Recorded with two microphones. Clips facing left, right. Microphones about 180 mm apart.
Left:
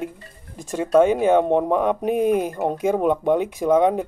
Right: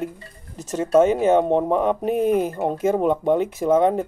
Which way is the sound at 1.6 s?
5° left (ahead or behind).